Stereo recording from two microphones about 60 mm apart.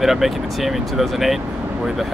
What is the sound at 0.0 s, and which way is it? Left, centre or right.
Speech, centre.